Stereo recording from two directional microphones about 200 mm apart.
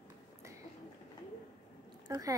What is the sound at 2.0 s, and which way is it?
Speech, 15° right (ahead or behind).